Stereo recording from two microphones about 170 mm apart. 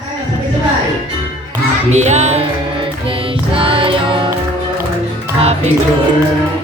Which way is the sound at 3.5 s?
30° right (ahead or behind).